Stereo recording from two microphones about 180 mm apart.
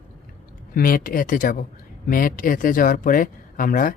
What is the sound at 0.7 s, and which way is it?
Speech, 55° left (ahead or behind).